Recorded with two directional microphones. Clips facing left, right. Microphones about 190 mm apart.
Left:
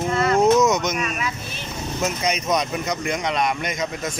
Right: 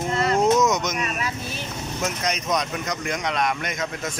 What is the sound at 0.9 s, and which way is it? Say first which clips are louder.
Speech: left 2 dB; 35° right (ahead or behind).